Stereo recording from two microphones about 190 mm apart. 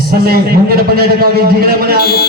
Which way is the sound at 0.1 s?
55° right (ahead or behind).